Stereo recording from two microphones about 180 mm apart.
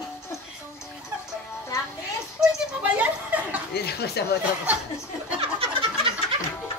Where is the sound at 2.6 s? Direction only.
5° right (ahead or behind).